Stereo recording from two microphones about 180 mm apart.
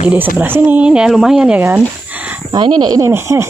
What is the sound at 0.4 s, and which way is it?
Speech, 10° right (ahead or behind).